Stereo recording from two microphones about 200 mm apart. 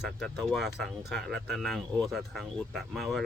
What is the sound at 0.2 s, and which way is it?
Speech, centre (ahead or behind).